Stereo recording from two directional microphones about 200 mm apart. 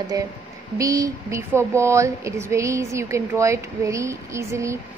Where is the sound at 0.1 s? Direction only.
20° right (ahead or behind).